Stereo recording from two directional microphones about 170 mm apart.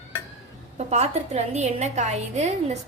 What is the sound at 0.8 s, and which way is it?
A woman's voice, 40° right (ahead or behind).